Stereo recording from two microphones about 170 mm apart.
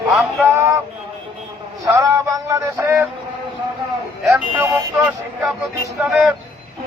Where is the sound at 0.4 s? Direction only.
15° right (ahead or behind).